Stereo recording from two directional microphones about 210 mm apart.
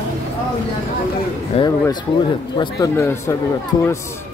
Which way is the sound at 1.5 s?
25° left (ahead or behind).